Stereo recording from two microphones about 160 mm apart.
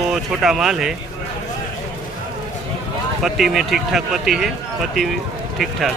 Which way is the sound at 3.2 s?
Centre (ahead or behind).